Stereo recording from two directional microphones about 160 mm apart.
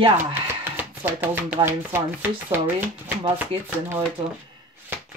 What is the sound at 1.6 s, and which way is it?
Speech, 15° right (ahead or behind).